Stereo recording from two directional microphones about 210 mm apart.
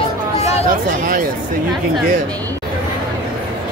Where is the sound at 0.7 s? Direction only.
40° right (ahead or behind).